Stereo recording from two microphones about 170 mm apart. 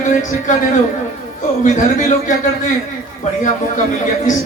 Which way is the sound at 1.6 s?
45° left (ahead or behind).